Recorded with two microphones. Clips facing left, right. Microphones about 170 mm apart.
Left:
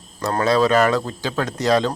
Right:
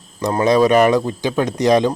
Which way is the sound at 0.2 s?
15° right (ahead or behind).